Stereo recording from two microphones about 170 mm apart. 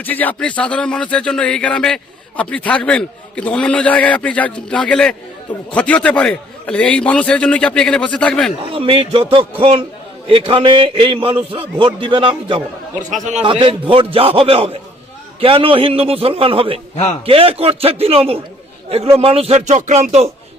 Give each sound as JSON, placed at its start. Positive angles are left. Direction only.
{"t": 0.0, "sound": "a man's voice", "side_deg": 10}
{"t": 8.7, "sound": "a man's voice", "side_deg": -35}